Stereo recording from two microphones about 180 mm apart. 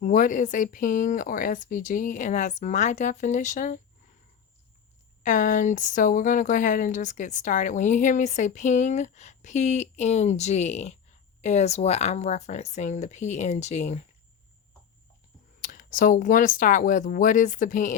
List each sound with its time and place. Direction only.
0.0 s speech: 45° left (ahead or behind)
5.2 s speech: 45° left (ahead or behind)
15.6 s speech: 45° left (ahead or behind)